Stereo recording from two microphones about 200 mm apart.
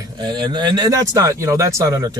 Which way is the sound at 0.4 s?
20° right (ahead or behind).